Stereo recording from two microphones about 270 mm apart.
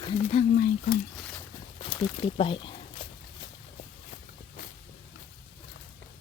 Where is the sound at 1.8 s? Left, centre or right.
Centre.